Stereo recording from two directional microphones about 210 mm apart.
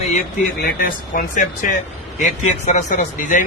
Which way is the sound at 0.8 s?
40° left (ahead or behind).